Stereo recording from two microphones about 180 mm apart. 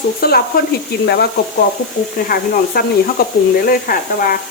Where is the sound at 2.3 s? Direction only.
55° left (ahead or behind).